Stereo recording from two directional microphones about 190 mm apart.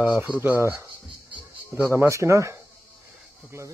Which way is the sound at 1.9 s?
15° right (ahead or behind).